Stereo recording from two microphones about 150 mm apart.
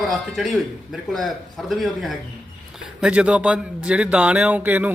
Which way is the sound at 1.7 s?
Centre (ahead or behind).